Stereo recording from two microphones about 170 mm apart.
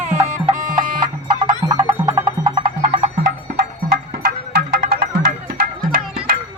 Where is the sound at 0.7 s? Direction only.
55° right (ahead or behind).